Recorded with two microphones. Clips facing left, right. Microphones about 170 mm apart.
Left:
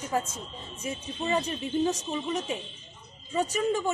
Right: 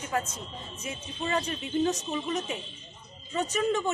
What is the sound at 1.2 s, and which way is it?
A man's voice, 15° left (ahead or behind).